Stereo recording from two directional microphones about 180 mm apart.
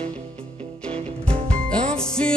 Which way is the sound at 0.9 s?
30° right (ahead or behind).